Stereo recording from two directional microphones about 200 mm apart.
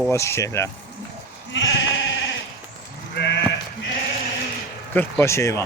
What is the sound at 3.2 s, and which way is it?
Sheep, 60° left (ahead or behind).